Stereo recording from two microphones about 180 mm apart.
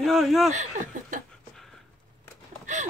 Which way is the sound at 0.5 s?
45° right (ahead or behind).